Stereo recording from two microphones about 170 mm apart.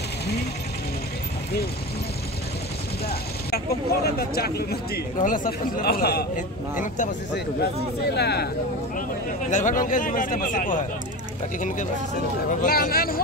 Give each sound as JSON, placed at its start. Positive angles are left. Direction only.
{"t": 3.1, "sound": "speech", "side_deg": 65}
{"t": 8.2, "sound": "speech", "side_deg": 75}
{"t": 9.5, "sound": "speech", "side_deg": 50}
{"t": 12.4, "sound": "speech", "side_deg": 55}